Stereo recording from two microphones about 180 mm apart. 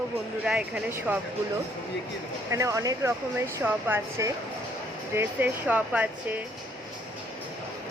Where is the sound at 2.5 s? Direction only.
15° right (ahead or behind).